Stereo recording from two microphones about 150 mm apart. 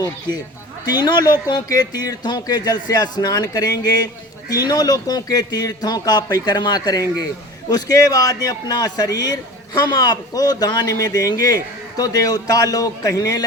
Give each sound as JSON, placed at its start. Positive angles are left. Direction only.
{"t": 0.0, "sound": "speech", "side_deg": 30}